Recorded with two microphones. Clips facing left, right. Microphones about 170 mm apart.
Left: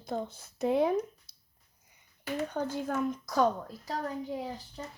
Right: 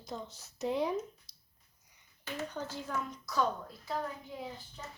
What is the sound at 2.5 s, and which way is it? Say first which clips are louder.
A woman's voice: left 6 dB; 55° left (ahead or behind).